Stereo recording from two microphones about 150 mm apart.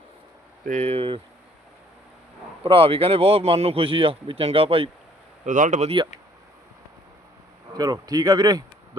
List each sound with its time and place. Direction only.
0.6 s speech: 50° right (ahead or behind)
2.6 s speech: 40° right (ahead or behind)
5.5 s speech: 60° right (ahead or behind)
7.8 s speech: 25° right (ahead or behind)